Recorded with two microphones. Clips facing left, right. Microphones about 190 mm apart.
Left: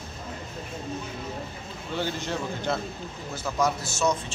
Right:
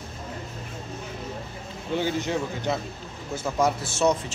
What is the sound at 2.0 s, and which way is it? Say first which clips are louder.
Speech: right 3 dB; 15° right (ahead or behind).